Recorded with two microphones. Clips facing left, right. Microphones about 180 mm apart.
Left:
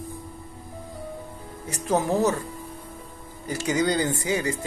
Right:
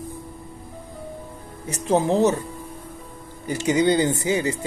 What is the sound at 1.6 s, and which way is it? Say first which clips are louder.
Speech: right 4 dB; 20° right (ahead or behind).